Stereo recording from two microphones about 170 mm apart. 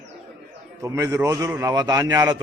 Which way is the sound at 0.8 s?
20° right (ahead or behind).